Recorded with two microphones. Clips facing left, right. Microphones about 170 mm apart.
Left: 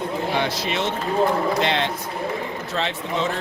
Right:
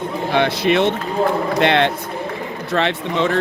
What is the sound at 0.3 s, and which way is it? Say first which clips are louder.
Speech: right 12 dB; 60° right (ahead or behind).